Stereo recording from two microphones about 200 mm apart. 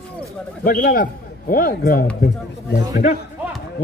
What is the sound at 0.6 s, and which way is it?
A man's voice, 45° left (ahead or behind).